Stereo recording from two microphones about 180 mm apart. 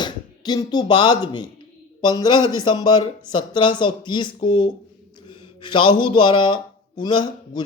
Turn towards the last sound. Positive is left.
turn(degrees=25)  # may be behind; listen again after turning